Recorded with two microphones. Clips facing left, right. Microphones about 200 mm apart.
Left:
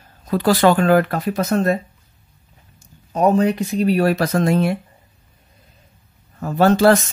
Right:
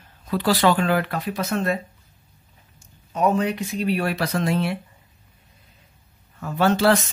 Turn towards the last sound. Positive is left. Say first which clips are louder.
# left 5 dB
turn(degrees=45)  # may be behind; listen again after turning